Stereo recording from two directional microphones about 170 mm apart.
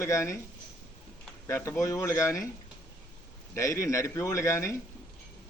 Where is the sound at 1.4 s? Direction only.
15° left (ahead or behind).